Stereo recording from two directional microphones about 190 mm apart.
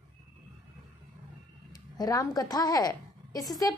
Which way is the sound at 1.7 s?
20° left (ahead or behind).